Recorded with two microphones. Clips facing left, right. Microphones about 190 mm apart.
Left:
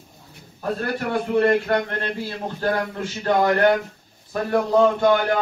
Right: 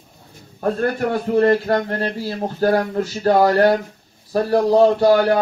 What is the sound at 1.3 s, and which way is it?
A man's voice, 35° right (ahead or behind).